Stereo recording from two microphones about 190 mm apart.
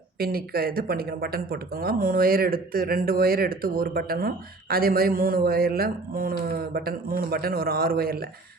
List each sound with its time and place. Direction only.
0.2 s speech: 50° right (ahead or behind)